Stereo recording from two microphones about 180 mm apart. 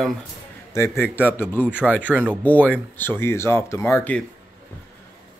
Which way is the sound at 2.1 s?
10° right (ahead or behind).